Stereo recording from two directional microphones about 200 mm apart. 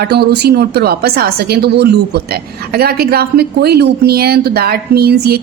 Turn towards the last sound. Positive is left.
turn(degrees=-50)  # may be behind; listen again after turning